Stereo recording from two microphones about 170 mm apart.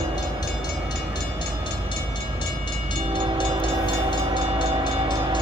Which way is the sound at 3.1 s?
30° right (ahead or behind).